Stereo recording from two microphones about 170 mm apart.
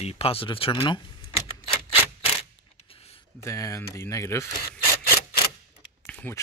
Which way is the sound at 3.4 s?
20° left (ahead or behind).